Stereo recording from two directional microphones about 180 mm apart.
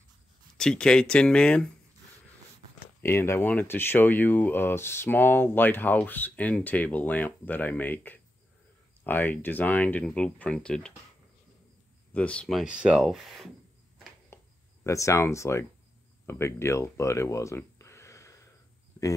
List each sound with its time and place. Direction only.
0.6 s speech: 5° left (ahead or behind)
2.8 s speech: 15° left (ahead or behind)
12.1 s speech: 5° left (ahead or behind)
14.3 s a sound: 15° left (ahead or behind)
16.3 s speech: 15° left (ahead or behind)